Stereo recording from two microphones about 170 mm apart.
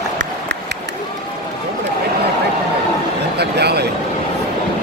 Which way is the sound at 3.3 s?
75° right (ahead or behind).